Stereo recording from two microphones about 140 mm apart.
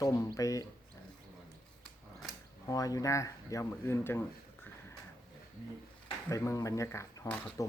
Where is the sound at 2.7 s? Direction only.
25° left (ahead or behind).